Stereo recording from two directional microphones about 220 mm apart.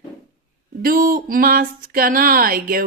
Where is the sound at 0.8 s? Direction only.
40° right (ahead or behind).